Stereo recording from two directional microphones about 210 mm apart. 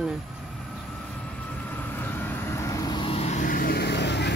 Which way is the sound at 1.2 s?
5° left (ahead or behind).